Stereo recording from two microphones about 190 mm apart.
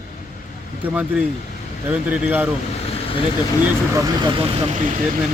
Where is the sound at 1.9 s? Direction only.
10° right (ahead or behind).